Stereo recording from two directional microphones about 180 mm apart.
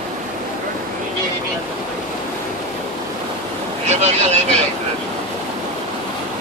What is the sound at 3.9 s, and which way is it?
Vehicle, 40° right (ahead or behind).